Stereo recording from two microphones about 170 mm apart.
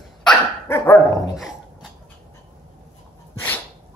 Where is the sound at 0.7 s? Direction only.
15° left (ahead or behind).